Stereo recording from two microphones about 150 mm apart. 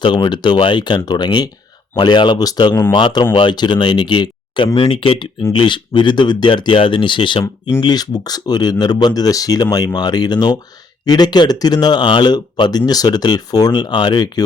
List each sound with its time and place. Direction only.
0.0 s speech: 35° left (ahead or behind)